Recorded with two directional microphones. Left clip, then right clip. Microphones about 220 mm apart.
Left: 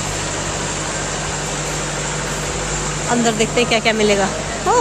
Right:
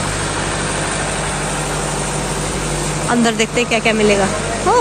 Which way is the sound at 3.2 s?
5° right (ahead or behind).